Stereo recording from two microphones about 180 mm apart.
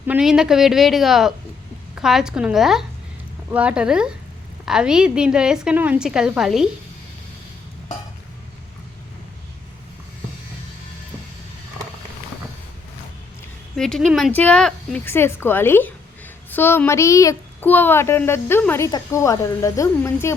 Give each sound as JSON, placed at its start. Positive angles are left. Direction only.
{"t": 0.1, "sound": "a woman's voice", "side_deg": -5}
{"t": 13.7, "sound": "a woman's voice", "side_deg": 5}